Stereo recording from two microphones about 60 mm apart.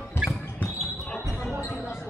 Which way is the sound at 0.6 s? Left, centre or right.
Left.